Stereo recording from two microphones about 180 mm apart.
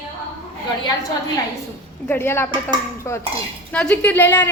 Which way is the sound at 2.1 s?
15° left (ahead or behind).